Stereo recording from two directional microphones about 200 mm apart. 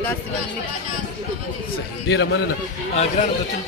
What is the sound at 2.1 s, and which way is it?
Speech, 70° left (ahead or behind).